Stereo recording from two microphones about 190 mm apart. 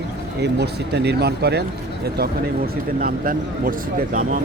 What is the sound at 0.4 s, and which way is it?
Speech, 60° right (ahead or behind).